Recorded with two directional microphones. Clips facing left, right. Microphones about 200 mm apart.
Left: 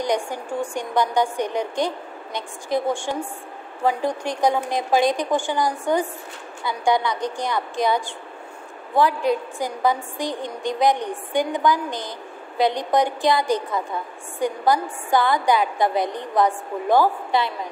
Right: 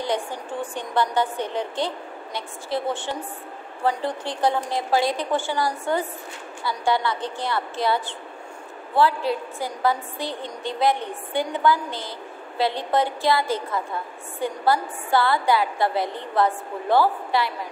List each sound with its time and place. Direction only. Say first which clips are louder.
0.0 s a woman's voice: left 3 dB; 15° left (ahead or behind)